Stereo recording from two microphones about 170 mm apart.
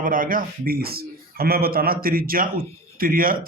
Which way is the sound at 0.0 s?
55° right (ahead or behind).